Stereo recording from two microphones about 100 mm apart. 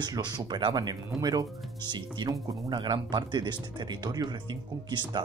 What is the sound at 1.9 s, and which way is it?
Speech, 50° right (ahead or behind).